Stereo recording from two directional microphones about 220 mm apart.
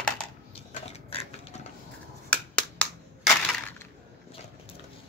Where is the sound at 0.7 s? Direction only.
30° left (ahead or behind).